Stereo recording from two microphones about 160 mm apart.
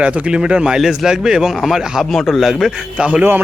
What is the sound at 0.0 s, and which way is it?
Speech, 5° right (ahead or behind).